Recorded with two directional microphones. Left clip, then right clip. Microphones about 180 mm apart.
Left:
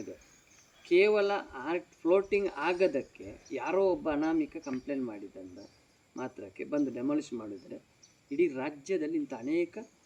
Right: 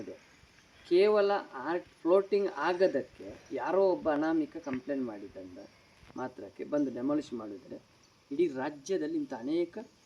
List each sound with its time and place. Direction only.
0.9 s speech: centre (ahead or behind)